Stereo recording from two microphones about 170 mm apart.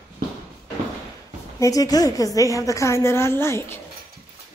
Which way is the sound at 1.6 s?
20° left (ahead or behind).